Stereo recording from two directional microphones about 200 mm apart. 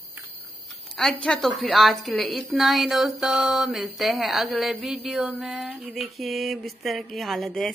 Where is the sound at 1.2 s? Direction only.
Centre (ahead or behind).